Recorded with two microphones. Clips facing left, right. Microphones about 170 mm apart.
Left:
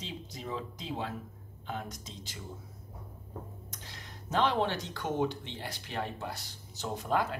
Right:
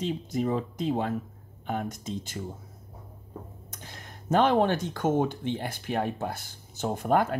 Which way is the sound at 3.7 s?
50° right (ahead or behind).